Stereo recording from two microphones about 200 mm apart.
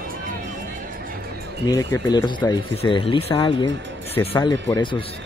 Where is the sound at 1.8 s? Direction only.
15° left (ahead or behind).